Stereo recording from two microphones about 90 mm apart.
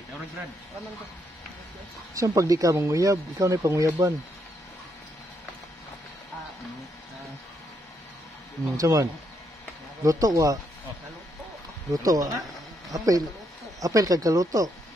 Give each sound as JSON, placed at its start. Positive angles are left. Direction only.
{"t": 2.1, "sound": "speech", "side_deg": -35}
{"t": 8.7, "sound": "speech", "side_deg": -40}
{"t": 11.9, "sound": "speech", "side_deg": -40}